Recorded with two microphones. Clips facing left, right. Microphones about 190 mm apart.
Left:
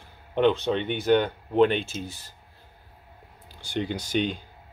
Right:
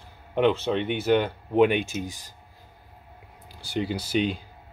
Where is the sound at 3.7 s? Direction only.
5° right (ahead or behind).